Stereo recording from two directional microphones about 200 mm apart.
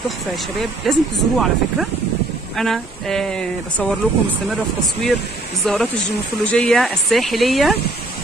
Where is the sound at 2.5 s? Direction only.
Centre (ahead or behind).